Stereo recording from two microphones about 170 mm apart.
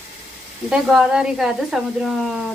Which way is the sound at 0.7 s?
5° right (ahead or behind).